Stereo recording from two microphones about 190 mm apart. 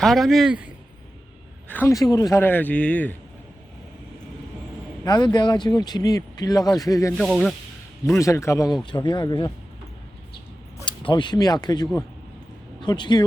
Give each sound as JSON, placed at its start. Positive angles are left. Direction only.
{"t": 0.0, "sound": "a man's voice", "side_deg": 0}
{"t": 1.6, "sound": "speech", "side_deg": 10}
{"t": 5.0, "sound": "speech", "side_deg": 20}
{"t": 7.2, "sound": "a man's voice", "side_deg": 0}
{"t": 8.2, "sound": "speech", "side_deg": 15}
{"t": 10.8, "sound": "speech", "side_deg": 25}